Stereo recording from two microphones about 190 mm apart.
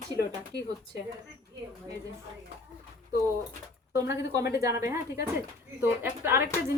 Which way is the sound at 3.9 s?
15° right (ahead or behind).